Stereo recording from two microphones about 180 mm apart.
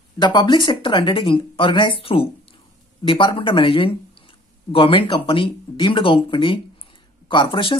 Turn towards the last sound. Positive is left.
turn(degrees=30)  # may be behind; listen again after turning